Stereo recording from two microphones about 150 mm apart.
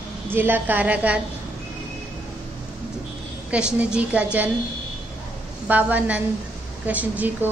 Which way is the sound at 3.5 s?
5° right (ahead or behind).